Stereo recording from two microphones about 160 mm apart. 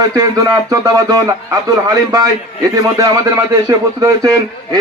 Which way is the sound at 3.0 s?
20° right (ahead or behind).